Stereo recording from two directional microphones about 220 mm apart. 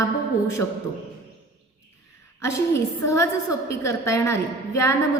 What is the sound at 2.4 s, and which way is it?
A woman's voice, 15° left (ahead or behind).